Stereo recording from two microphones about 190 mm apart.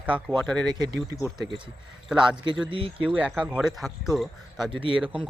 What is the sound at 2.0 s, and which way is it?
Speech, 5° right (ahead or behind).